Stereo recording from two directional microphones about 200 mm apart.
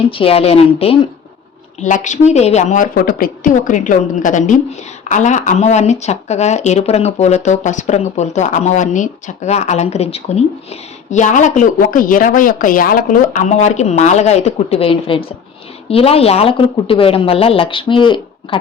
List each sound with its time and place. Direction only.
0.1 s speech: 30° left (ahead or behind)